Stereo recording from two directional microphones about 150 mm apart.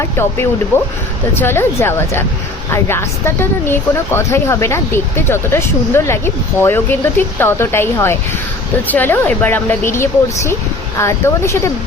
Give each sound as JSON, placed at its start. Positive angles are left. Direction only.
{"t": 0.0, "sound": "a woman's voice", "side_deg": 15}